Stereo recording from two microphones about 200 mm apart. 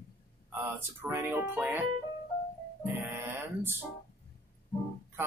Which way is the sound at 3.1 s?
10° right (ahead or behind).